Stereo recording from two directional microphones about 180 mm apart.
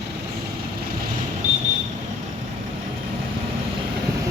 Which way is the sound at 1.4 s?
45° right (ahead or behind).